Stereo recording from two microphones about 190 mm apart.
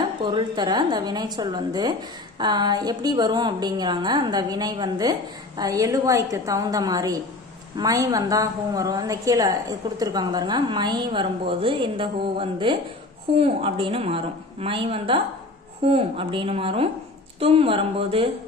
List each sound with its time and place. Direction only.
0.2 s a woman's voice: 25° right (ahead or behind)